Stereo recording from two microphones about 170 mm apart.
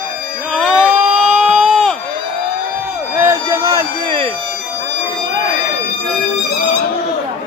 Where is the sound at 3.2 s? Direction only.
15° right (ahead or behind).